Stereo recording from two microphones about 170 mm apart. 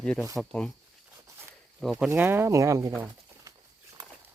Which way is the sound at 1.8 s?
Centre (ahead or behind).